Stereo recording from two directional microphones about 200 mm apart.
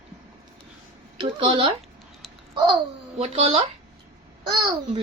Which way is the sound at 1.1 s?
25° right (ahead or behind).